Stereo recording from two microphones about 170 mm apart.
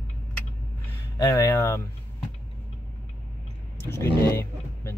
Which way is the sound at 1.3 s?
15° left (ahead or behind).